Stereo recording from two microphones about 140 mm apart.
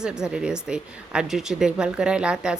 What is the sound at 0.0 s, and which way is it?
Speech, 5° right (ahead or behind).